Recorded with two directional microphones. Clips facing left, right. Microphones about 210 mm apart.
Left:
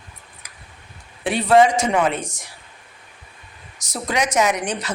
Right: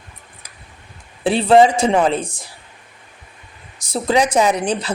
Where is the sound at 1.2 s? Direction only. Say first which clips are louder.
Right 3 dB; 30° right (ahead or behind).